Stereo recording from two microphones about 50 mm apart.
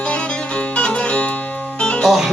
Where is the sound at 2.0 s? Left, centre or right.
Centre.